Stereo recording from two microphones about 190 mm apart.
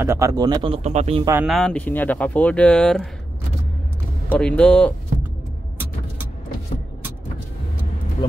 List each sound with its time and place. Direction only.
0.0 s speech: 15° right (ahead or behind)
0.8 s speech: 35° right (ahead or behind)
1.4 s speech: centre (ahead or behind)
4.3 s speech: 5° left (ahead or behind)